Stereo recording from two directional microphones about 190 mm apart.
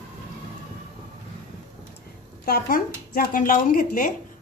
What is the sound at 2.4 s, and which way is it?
Speech, 50° left (ahead or behind).